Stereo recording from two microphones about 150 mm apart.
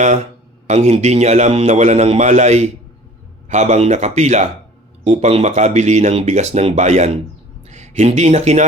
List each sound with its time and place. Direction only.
0.7 s speech: 50° right (ahead or behind)